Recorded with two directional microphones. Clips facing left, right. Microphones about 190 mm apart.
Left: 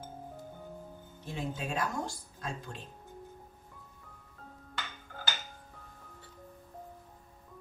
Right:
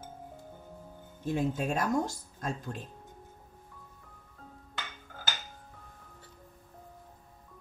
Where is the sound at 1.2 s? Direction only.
45° right (ahead or behind).